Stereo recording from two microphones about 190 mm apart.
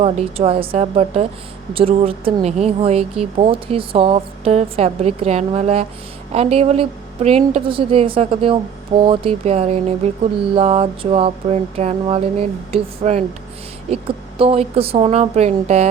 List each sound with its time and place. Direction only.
0.0 s speech: 30° right (ahead or behind)